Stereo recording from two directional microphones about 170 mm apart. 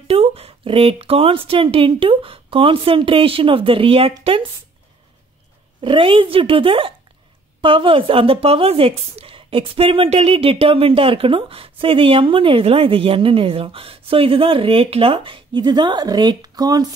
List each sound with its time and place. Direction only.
0.1 s a woman's voice: 35° right (ahead or behind)
5.8 s a woman's voice: 30° right (ahead or behind)